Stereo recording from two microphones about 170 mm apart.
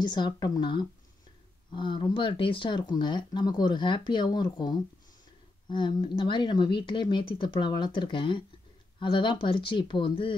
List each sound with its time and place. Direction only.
0.0 s speech: 25° left (ahead or behind)